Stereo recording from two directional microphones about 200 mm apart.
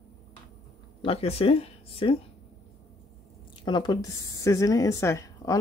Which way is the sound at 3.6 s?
20° left (ahead or behind).